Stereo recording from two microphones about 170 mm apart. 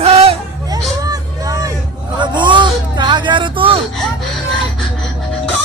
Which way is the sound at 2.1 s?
25° right (ahead or behind).